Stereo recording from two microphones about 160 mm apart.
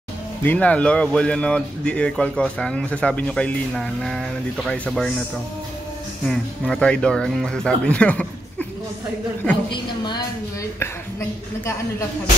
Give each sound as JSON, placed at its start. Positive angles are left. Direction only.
{"t": 0.4, "sound": "speech", "side_deg": 10}
{"t": 6.2, "sound": "speech", "side_deg": 5}
{"t": 9.7, "sound": "a woman's voice", "side_deg": 25}
{"t": 10.8, "sound": "speech", "side_deg": 15}